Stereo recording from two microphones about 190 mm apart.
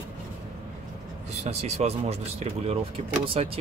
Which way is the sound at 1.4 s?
35° right (ahead or behind).